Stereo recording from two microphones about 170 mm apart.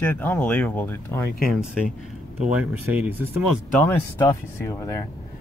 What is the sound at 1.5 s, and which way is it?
Speech, 5° right (ahead or behind).